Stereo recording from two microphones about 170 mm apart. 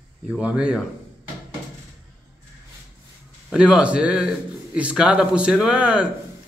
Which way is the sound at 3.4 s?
5° right (ahead or behind).